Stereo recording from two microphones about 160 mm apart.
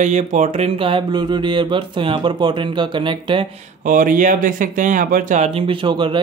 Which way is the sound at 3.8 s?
55° right (ahead or behind).